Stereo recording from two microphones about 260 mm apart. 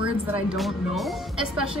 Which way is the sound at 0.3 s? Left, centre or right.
Centre.